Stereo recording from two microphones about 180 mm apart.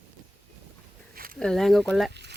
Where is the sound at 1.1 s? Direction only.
55° right (ahead or behind).